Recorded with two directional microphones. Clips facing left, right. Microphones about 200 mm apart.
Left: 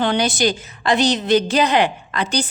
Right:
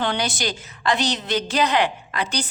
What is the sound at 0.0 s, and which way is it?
A woman's voice, 15° left (ahead or behind).